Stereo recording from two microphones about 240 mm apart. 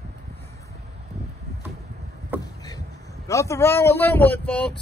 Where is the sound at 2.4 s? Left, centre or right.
Centre.